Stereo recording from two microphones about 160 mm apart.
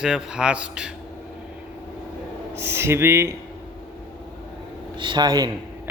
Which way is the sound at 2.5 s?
15° right (ahead or behind).